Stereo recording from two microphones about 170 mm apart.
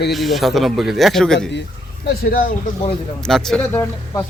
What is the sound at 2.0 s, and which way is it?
Speech, 65° left (ahead or behind).